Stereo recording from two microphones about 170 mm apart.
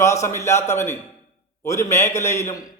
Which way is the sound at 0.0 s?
15° left (ahead or behind).